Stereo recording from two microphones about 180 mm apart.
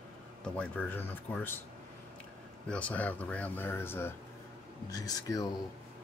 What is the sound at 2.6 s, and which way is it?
Speech, 5° left (ahead or behind).